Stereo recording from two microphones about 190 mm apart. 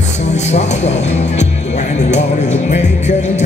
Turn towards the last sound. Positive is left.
turn(degrees=40)  # may be behind; listen again after turning